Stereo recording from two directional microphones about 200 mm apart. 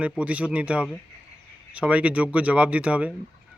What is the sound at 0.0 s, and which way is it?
Speech, 5° right (ahead or behind).